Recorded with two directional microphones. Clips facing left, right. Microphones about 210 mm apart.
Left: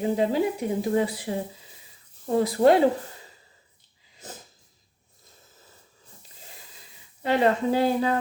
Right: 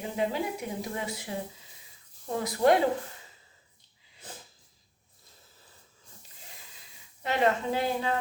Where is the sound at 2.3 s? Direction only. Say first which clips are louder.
Left 5 dB; 30° left (ahead or behind).